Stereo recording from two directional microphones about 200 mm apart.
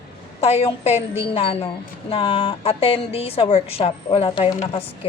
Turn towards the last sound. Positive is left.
turn(degrees=30)  # may be behind; listen again after turning